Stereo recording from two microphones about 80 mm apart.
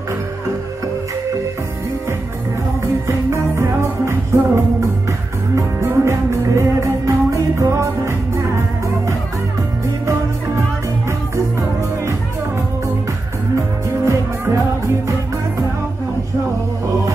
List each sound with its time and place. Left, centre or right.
3.1 s music: right
5.8 s music: right
14.0 s music: right